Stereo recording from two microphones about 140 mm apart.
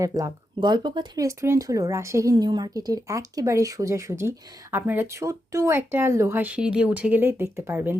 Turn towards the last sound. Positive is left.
turn(degrees=-15)  # may be behind; listen again after turning